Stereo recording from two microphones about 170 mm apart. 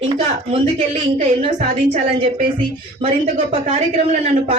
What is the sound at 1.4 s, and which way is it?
Speech, 40° right (ahead or behind).